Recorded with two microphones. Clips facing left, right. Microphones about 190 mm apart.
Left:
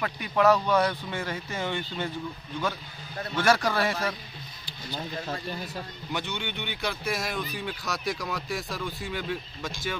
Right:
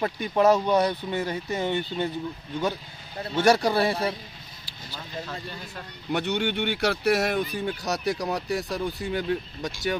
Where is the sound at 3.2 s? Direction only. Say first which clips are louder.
Right 4 dB; 30° right (ahead or behind).